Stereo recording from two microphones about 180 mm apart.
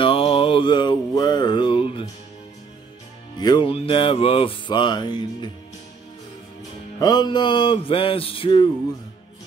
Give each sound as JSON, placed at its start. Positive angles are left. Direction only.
{"t": 0.0, "sound": "music", "side_deg": 30}
{"t": 3.3, "sound": "music", "side_deg": 25}
{"t": 7.0, "sound": "music", "side_deg": 25}